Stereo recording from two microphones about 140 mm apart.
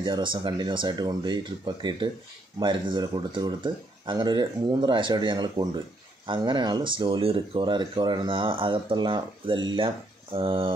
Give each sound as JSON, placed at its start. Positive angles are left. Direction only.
{"t": 0.0, "sound": "speech", "side_deg": -35}